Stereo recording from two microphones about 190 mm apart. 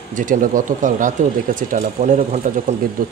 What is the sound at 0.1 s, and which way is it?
Speech, 45° right (ahead or behind).